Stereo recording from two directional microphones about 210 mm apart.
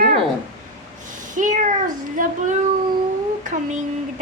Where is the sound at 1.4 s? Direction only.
35° right (ahead or behind).